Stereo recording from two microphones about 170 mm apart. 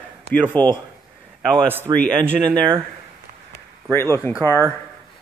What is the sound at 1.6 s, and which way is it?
Speech, 10° right (ahead or behind).